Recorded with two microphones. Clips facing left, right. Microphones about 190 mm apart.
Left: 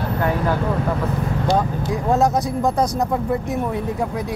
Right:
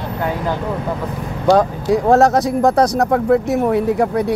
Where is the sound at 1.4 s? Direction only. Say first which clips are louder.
Right 9 dB; 80° right.